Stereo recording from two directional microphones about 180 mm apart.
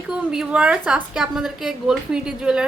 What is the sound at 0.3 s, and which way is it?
A woman's voice, 5° right (ahead or behind).